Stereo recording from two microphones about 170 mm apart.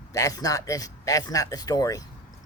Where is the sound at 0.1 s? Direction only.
20° left (ahead or behind).